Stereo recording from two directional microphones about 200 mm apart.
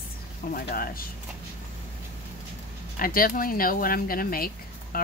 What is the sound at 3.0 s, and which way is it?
Speech, 45° left (ahead or behind).